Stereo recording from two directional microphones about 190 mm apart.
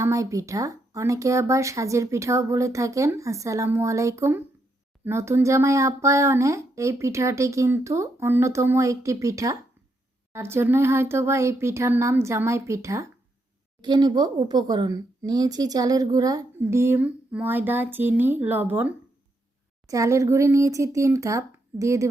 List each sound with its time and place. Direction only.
0.0 s speech: 15° right (ahead or behind)